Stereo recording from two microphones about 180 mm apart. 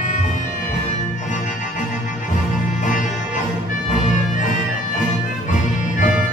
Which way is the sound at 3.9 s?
45° left (ahead or behind).